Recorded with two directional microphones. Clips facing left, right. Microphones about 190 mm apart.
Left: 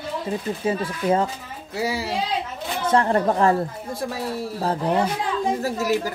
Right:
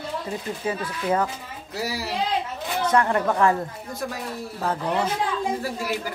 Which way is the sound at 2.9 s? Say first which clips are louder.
Left 3 dB; 30° left (ahead or behind).